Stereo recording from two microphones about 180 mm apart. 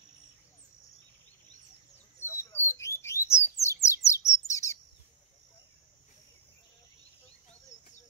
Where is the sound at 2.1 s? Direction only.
15° left (ahead or behind).